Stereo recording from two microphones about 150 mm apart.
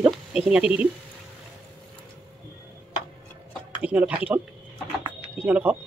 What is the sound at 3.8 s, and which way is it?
Speech, 10° right (ahead or behind).